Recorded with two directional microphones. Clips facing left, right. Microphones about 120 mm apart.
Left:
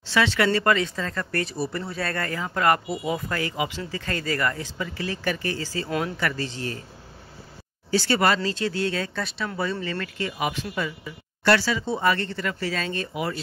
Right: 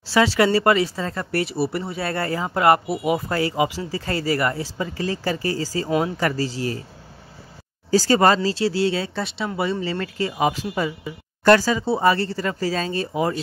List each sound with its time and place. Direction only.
0.4 s speech: 25° right (ahead or behind)
5.8 s speech: 20° right (ahead or behind)
6.1 s speech: 35° right (ahead or behind)
7.9 s speech: 35° right (ahead or behind)